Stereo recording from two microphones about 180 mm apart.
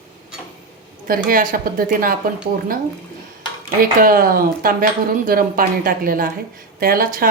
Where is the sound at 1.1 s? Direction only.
50° right (ahead or behind).